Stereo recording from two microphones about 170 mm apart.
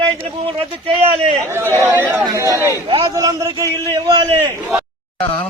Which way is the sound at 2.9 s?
30° right (ahead or behind).